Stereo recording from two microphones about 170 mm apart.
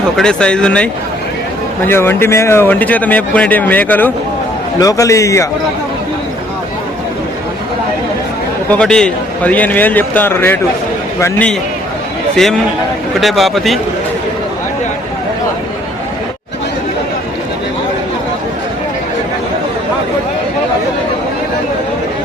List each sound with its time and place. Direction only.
0.2 s speech: 5° left (ahead or behind)
1.9 s a man's voice: 15° left (ahead or behind)
8.7 s speech: 5° left (ahead or behind)
13.1 s speech: centre (ahead or behind)